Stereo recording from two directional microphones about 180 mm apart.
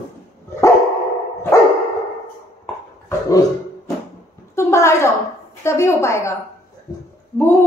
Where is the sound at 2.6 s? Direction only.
15° left (ahead or behind).